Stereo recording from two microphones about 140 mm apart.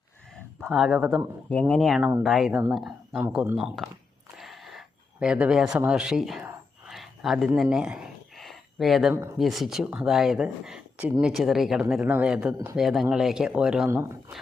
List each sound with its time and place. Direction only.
0.6 s speech: centre (ahead or behind)
1.5 s speech: 10° left (ahead or behind)
2.0 s a man's voice: 15° right (ahead or behind)
2.2 s speech: centre (ahead or behind)
2.5 s a man's voice: 20° right (ahead or behind)
2.7 s a man's voice: centre (ahead or behind)
4.4 s a sound: centre (ahead or behind)
6.4 s a sound: 15° right (ahead or behind)
6.9 s a sound: centre (ahead or behind)
9.4 s a man's voice: centre (ahead or behind)
13.9 s speech: 20° right (ahead or behind)